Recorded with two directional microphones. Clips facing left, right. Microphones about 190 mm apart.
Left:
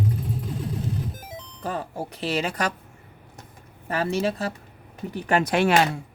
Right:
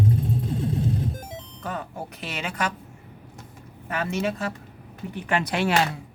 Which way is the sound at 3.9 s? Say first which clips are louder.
Left 2 dB; 35° left (ahead or behind).